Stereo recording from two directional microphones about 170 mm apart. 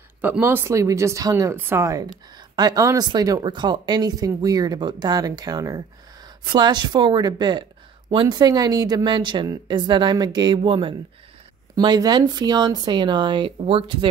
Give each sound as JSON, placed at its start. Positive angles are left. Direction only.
{"t": 0.2, "sound": "speech", "side_deg": -10}